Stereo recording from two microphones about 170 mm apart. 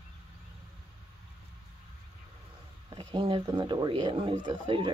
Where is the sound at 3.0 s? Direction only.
30° right (ahead or behind).